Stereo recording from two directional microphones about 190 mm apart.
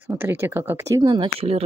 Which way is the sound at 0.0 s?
10° right (ahead or behind).